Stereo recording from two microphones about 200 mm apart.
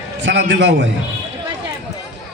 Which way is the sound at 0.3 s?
65° right (ahead or behind).